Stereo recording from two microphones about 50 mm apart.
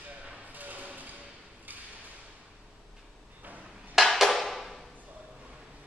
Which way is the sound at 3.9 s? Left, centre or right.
Centre.